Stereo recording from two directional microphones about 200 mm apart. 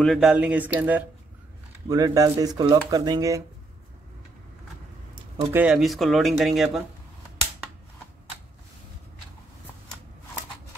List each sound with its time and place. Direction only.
0.0 s speech: centre (ahead or behind); by 3.4 s 15° right (ahead or behind)
5.5 s speech: 5° right (ahead or behind)